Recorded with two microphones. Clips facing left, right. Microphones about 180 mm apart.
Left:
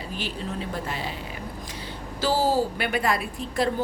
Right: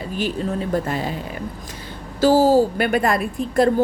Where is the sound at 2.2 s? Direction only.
45° right (ahead or behind).